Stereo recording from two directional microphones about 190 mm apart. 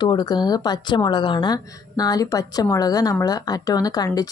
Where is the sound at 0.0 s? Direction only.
20° left (ahead or behind).